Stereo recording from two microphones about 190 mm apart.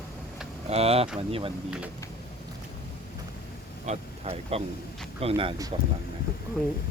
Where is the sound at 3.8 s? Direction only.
35° right (ahead or behind).